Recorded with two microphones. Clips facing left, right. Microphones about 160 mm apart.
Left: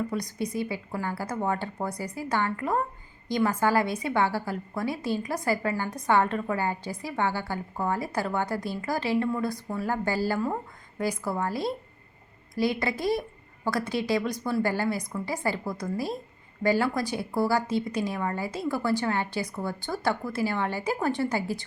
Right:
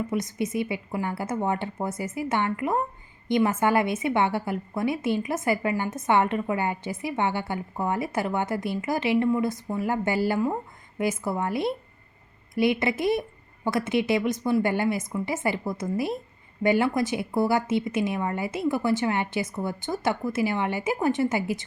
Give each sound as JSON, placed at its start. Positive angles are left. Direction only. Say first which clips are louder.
{"t": 0.1, "sound": "a woman's voice", "louder": "right 3 dB", "side_deg": -20}